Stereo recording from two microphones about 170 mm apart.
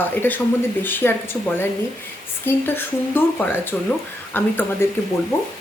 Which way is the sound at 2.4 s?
10° left (ahead or behind).